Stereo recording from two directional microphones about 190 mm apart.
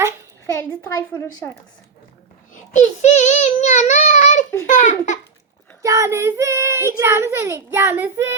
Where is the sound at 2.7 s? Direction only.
40° left (ahead or behind).